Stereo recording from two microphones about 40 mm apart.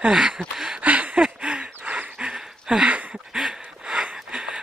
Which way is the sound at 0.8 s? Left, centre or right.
Right.